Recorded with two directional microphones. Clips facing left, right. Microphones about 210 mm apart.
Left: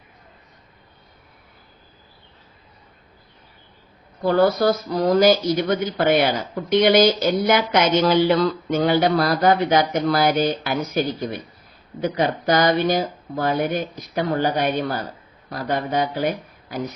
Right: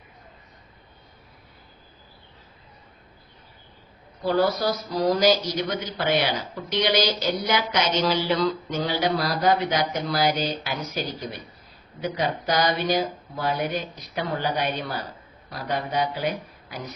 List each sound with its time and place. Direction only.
4.2 s speech: 55° left (ahead or behind)